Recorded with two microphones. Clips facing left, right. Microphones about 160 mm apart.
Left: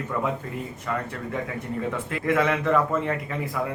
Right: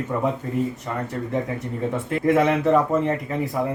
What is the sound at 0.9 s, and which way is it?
Speech, 30° right (ahead or behind).